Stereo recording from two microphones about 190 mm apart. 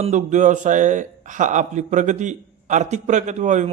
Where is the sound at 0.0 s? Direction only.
40° right (ahead or behind).